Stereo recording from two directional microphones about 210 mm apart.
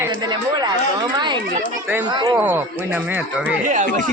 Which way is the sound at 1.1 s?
20° right (ahead or behind).